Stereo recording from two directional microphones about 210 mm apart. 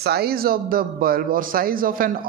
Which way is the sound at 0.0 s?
50° right (ahead or behind).